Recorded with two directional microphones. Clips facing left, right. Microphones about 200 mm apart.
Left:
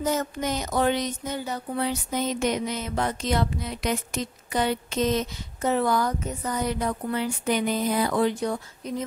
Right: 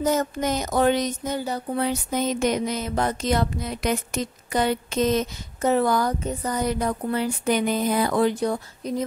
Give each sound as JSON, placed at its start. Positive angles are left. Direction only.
{"t": 0.0, "sound": "music", "side_deg": -40}
{"t": 1.8, "sound": "music", "side_deg": -50}